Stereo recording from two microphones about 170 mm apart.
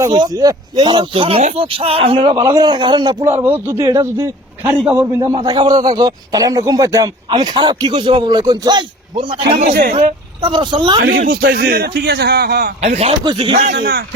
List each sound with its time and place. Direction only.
0.1 s speech: 25° right (ahead or behind)
3.3 s a man's voice: 10° right (ahead or behind); by 9.6 s 30° right (ahead or behind)
9.6 s speech: 60° right (ahead or behind)
10.4 s speech: 25° right (ahead or behind)
11.2 s a man's voice: 55° right (ahead or behind)
12.8 s speech: 40° right (ahead or behind)
13.7 s speech: 60° right (ahead or behind)